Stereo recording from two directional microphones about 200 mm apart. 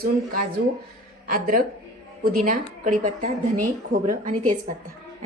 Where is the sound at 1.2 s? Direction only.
45° right (ahead or behind).